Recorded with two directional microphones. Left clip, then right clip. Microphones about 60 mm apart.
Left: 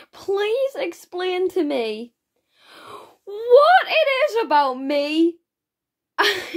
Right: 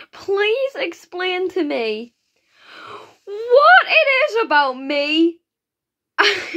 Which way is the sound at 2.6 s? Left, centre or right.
Left.